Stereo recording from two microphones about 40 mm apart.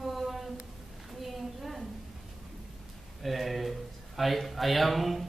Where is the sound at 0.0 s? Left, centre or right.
Centre.